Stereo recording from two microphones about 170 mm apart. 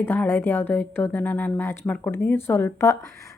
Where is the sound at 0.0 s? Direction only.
10° left (ahead or behind).